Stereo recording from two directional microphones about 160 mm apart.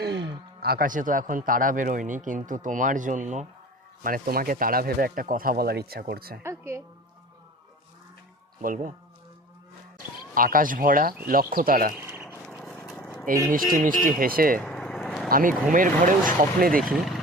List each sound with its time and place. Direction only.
0.0 s a sound: 90° right
0.6 s a man's voice: 70° right (ahead or behind); by 3.4 s 50° right (ahead or behind)
4.0 s speech: 65° right (ahead or behind)
6.4 s music: 15° right (ahead or behind)
8.6 s a man's voice: 55° right (ahead or behind)
10.3 s a man's voice: 60° right (ahead or behind)
13.2 s a man's voice: 60° right (ahead or behind)
14.6 s vehicle: 5° left (ahead or behind)
15.3 s a man's voice: 60° right (ahead or behind)